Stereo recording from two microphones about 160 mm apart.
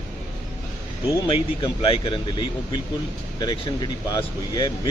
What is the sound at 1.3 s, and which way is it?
A man's voice, 30° left (ahead or behind).